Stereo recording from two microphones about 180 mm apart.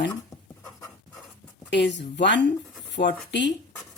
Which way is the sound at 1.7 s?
75° left (ahead or behind).